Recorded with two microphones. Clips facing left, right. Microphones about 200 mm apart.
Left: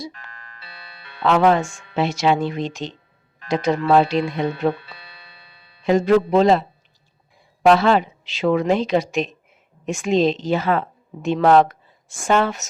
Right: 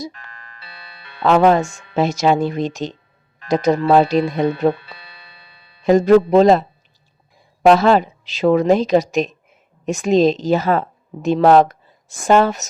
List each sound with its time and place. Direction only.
0.6 s music: 65° right (ahead or behind)
1.2 s a woman's voice: 40° right (ahead or behind)